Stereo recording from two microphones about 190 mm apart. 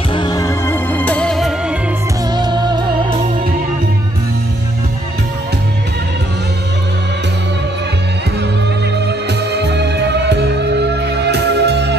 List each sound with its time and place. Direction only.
0.1 s music: 20° left (ahead or behind); by 1.5 s 5° left (ahead or behind)
2.3 s music: 25° right (ahead or behind)
9.0 s music: 60° right (ahead or behind)